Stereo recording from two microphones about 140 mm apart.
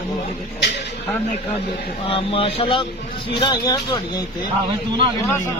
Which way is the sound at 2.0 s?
40° left (ahead or behind).